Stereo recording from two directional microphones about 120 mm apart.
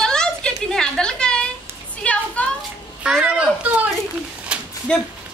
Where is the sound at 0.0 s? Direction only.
5° left (ahead or behind).